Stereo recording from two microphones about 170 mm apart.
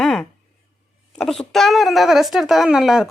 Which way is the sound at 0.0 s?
5° left (ahead or behind).